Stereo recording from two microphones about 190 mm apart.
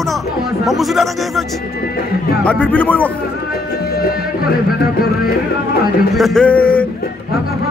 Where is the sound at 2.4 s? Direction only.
5° left (ahead or behind).